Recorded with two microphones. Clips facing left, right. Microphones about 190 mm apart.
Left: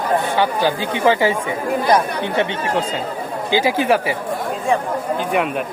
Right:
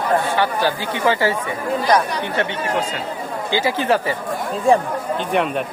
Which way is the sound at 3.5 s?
10° left (ahead or behind).